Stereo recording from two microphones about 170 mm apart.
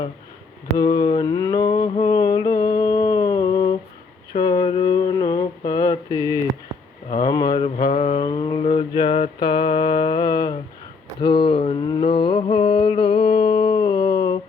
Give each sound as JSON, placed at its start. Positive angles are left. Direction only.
{"t": 0.8, "sound": "mantra", "side_deg": 20}
{"t": 4.4, "sound": "a sound", "side_deg": 25}
{"t": 7.1, "sound": "mantra", "side_deg": 20}
{"t": 7.6, "sound": "mantra", "side_deg": 35}
{"t": 8.2, "sound": "mantra", "side_deg": 25}